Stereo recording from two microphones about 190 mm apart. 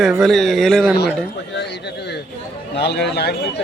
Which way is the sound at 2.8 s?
60° left (ahead or behind).